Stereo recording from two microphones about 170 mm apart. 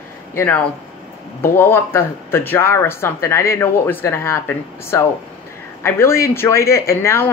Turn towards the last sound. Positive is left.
turn(degrees=15)  # may be behind; listen again after turning